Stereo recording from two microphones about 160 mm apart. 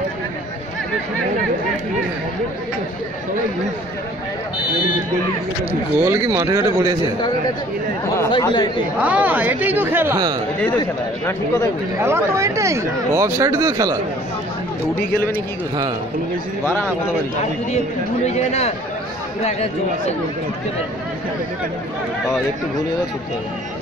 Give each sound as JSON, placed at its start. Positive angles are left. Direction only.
{"t": 6.0, "sound": "speech", "side_deg": -20}
{"t": 8.3, "sound": "speech", "side_deg": 30}
{"t": 9.0, "sound": "speech", "side_deg": -10}
{"t": 11.2, "sound": "speech", "side_deg": 15}
{"t": 12.0, "sound": "speech", "side_deg": -15}
{"t": 18.2, "sound": "speech", "side_deg": 45}